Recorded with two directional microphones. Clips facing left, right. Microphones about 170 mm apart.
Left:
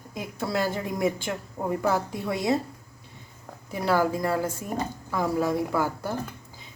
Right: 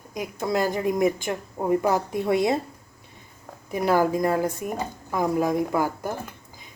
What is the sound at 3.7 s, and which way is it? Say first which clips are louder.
A woman's voice: right 3 dB; 15° right (ahead or behind).